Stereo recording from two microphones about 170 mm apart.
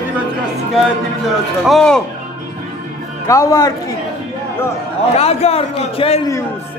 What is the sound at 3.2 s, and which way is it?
Speech, 20° left (ahead or behind).